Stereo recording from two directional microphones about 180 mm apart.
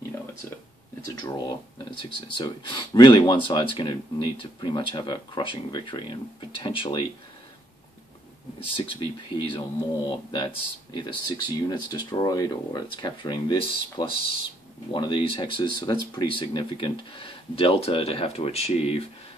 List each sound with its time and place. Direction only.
1.0 s speech: 20° left (ahead or behind)
8.5 s speech: 30° left (ahead or behind)